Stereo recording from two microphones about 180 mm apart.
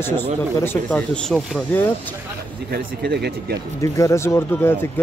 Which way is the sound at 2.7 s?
65° right (ahead or behind).